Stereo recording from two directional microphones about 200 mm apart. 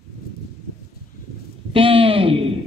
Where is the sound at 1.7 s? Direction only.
25° right (ahead or behind).